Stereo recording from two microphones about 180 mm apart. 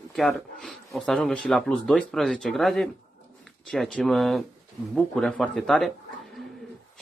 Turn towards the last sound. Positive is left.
turn(degrees=0)  # may be behind; listen again after turning